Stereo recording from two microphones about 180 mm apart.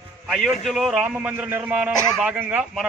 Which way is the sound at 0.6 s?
Centre (ahead or behind).